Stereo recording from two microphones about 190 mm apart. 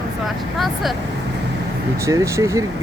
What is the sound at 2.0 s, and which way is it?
Speech, 15° right (ahead or behind).